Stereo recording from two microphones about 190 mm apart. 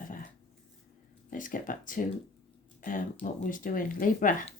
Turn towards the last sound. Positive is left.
turn(degrees=45)  # may be behind; listen again after turning